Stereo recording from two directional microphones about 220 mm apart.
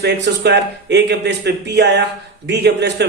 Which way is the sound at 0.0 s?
50° right (ahead or behind).